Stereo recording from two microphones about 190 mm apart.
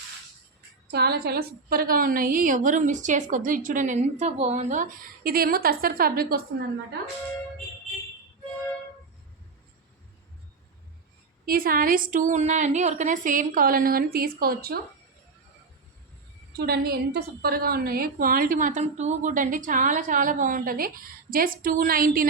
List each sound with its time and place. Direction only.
0.9 s a woman's voice: 55° right (ahead or behind)
11.4 s a woman's voice: 50° right (ahead or behind)
16.6 s a woman's voice: 55° right (ahead or behind)